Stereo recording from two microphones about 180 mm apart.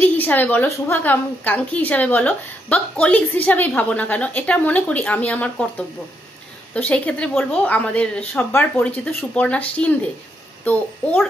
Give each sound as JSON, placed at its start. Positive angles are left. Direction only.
{"t": 0.0, "sound": "a woman's voice", "side_deg": 10}